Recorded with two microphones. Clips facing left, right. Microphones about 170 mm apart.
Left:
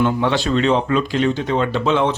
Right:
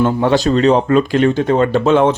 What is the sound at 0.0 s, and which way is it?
Speech, 40° right (ahead or behind).